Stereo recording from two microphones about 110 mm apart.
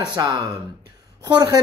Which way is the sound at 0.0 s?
40° right (ahead or behind).